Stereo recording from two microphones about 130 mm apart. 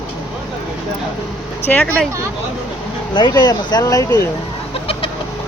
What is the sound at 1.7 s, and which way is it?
Speech, 10° left (ahead or behind).